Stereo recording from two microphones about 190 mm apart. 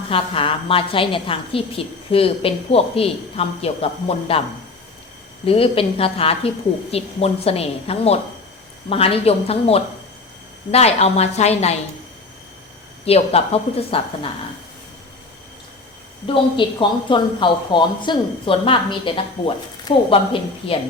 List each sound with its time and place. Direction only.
0.1 s a woman's voice: 30° left (ahead or behind)
5.5 s a woman's voice: 30° left (ahead or behind)
13.1 s a woman's voice: 30° left (ahead or behind)
16.2 s a woman's voice: 25° left (ahead or behind)